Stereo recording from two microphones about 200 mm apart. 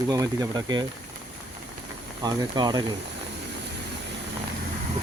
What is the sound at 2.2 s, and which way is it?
Speech, 20° right (ahead or behind).